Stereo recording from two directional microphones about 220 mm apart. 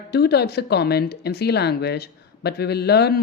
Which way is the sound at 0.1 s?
50° left (ahead or behind).